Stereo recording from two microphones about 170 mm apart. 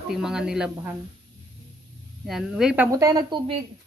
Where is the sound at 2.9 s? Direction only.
20° right (ahead or behind).